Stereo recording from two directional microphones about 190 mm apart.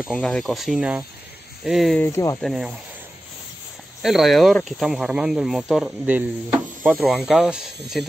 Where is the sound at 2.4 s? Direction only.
Centre (ahead or behind).